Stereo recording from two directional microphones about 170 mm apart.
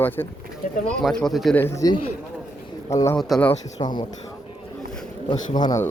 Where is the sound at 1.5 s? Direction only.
15° left (ahead or behind).